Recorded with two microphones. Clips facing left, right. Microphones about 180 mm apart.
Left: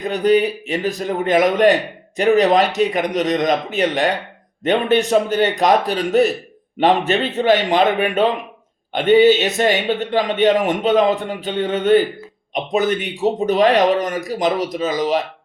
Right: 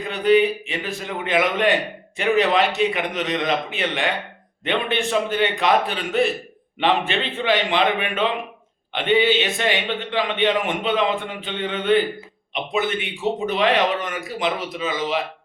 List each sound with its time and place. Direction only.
0.0 s a man's voice: 40° left (ahead or behind)